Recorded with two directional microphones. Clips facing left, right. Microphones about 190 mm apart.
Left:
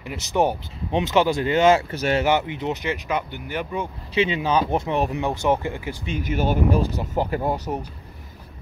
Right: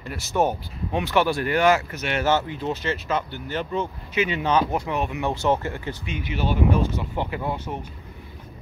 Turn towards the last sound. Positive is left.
turn(degrees=40)  # may be behind; listen again after turning